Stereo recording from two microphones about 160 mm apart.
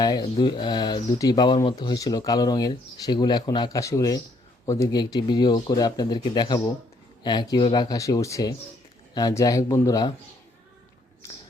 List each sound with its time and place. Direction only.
0.0 s speech: 25° left (ahead or behind)